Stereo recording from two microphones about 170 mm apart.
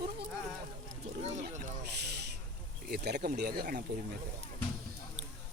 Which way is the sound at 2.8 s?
70° right (ahead or behind).